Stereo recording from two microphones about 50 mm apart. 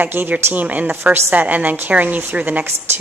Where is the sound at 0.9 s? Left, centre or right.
Right.